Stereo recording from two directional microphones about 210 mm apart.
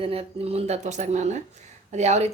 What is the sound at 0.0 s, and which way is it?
Speech, 30° right (ahead or behind).